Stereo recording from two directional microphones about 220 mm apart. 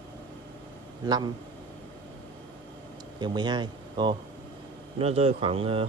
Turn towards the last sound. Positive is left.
turn(degrees=-25)  # may be behind; listen again after turning